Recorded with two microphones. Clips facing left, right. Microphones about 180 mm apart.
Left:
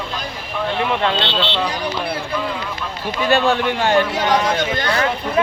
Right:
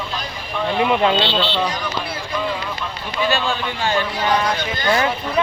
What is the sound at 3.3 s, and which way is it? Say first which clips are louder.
A man's voice: left 10 dB; 70° left (ahead or behind).